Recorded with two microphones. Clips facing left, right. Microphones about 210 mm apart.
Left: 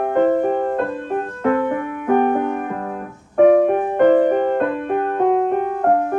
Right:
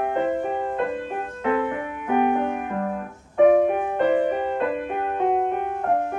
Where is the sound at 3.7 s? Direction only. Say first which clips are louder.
Left 7 dB; 45° left (ahead or behind).